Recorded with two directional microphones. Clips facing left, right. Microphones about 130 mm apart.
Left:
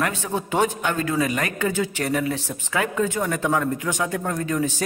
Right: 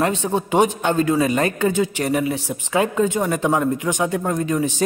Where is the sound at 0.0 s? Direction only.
25° right (ahead or behind).